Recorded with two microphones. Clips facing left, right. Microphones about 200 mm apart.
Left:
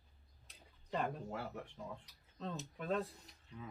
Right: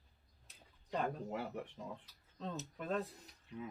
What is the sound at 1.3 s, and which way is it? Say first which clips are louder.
Speech: right 3 dB; 20° right (ahead or behind).